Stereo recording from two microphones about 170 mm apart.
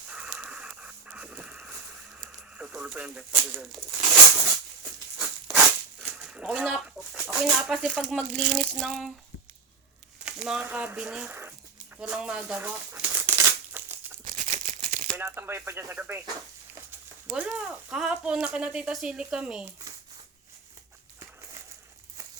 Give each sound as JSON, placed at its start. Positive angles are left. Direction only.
{"t": 0.1, "sound": "dog", "side_deg": -5}
{"t": 2.6, "sound": "speech", "side_deg": -5}
{"t": 5.1, "sound": "a sound", "side_deg": 0}
{"t": 7.4, "sound": "speech", "side_deg": -5}
{"t": 10.2, "sound": "speech", "side_deg": -5}
{"t": 13.7, "sound": "crumpling", "side_deg": -10}
{"t": 14.3, "sound": "crumpling", "side_deg": -45}
{"t": 15.1, "sound": "speech", "side_deg": -15}
{"t": 17.3, "sound": "speech", "side_deg": -5}